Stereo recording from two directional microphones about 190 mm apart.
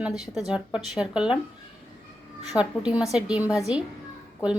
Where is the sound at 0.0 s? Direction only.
Centre (ahead or behind).